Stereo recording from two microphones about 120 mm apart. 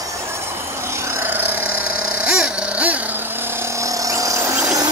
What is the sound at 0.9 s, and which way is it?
Jackhammer, 20° right (ahead or behind).